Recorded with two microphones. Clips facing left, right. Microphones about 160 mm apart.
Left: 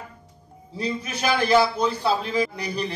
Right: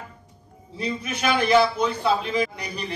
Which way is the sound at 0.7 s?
30° left (ahead or behind).